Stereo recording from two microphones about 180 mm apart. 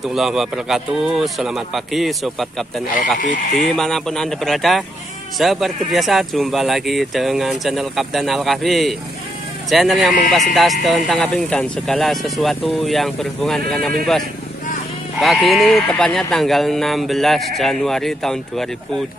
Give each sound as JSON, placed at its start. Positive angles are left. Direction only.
{"t": 0.0, "sound": "speech", "side_deg": 0}
{"t": 3.2, "sound": "speech", "side_deg": 45}
{"t": 3.7, "sound": "speech", "side_deg": 0}
{"t": 15.1, "sound": "speech", "side_deg": 0}